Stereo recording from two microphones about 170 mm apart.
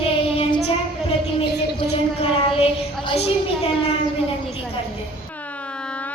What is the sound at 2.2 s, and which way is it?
Child singing, 35° left (ahead or behind).